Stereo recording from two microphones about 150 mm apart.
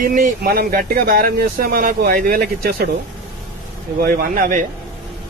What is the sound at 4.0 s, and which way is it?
Speech, 75° right (ahead or behind).